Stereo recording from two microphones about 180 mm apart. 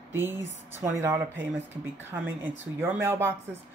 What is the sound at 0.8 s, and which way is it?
A woman's voice, 15° right (ahead or behind).